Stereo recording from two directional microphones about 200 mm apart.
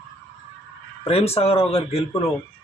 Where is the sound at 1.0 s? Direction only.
30° left (ahead or behind).